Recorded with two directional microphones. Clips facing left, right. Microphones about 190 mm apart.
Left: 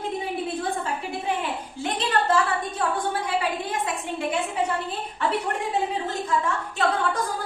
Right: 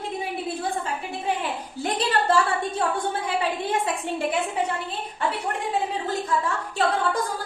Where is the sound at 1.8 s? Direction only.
35° right (ahead or behind).